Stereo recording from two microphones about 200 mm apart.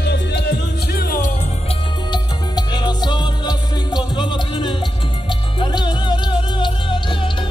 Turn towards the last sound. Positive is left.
turn(degrees=25)  # may be behind; listen again after turning